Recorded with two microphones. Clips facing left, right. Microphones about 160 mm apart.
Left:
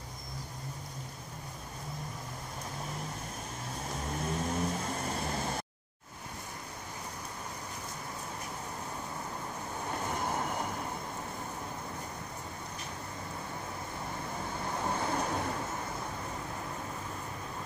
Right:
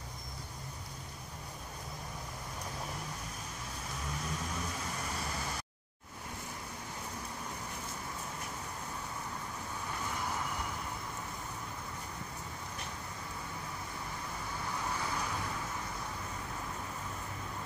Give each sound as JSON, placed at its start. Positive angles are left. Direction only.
{"t": 4.1, "sound": "vehicle", "side_deg": 50}
{"t": 10.0, "sound": "vehicle", "side_deg": 50}
{"t": 14.9, "sound": "waves", "side_deg": 55}